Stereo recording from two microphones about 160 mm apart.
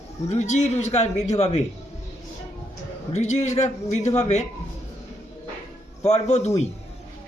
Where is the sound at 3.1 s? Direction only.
45° left (ahead or behind).